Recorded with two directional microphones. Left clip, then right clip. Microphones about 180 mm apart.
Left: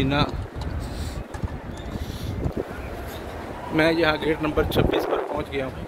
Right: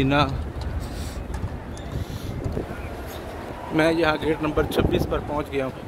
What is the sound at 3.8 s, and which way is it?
Speech, 5° right (ahead or behind).